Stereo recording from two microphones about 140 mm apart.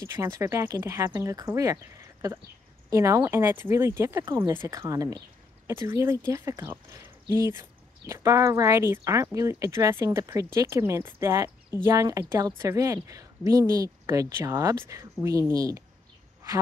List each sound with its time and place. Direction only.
0.0 s a woman's voice: 15° right (ahead or behind)
2.9 s a woman's voice: 20° right (ahead or behind)
8.1 s a woman's voice: 20° right (ahead or behind)